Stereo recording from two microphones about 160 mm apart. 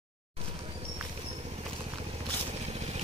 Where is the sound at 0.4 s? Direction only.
40° right (ahead or behind).